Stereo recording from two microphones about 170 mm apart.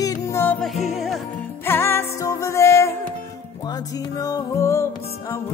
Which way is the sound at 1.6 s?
15° left (ahead or behind).